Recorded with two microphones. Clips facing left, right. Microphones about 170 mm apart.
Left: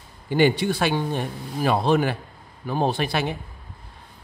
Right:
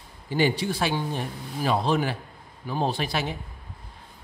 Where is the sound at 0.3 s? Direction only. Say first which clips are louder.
Left 5 dB; 60° left (ahead or behind).